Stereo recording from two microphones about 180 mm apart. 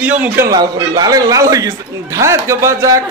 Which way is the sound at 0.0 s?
10° right (ahead or behind).